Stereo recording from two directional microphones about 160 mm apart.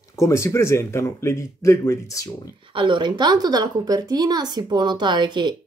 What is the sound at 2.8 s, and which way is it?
A woman's voice, 30° right (ahead or behind).